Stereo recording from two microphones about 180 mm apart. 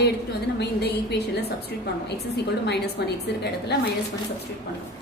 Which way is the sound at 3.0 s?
65° left (ahead or behind).